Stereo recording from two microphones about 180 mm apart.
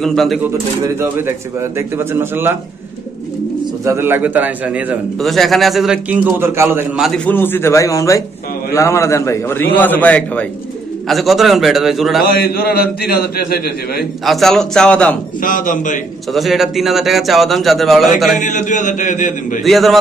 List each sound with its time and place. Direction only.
0.0 s a man's voice: centre (ahead or behind)
0.8 s a man's voice: 10° right (ahead or behind)
3.8 s a man's voice: 15° right (ahead or behind)
7.2 s a man's voice: 10° left (ahead or behind)
12.3 s a man's voice: 60° left (ahead or behind)
14.2 s a man's voice: centre (ahead or behind)
15.4 s a man's voice: 50° left (ahead or behind)
16.3 s a man's voice: centre (ahead or behind)
18.4 s a man's voice: 45° left (ahead or behind)
19.6 s a man's voice: centre (ahead or behind)